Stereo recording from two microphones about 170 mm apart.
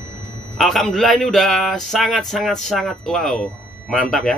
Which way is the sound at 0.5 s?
Centre (ahead or behind).